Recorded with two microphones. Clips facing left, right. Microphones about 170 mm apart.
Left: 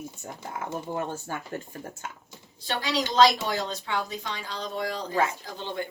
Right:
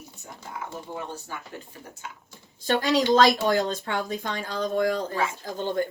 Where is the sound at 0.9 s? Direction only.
50° left (ahead or behind).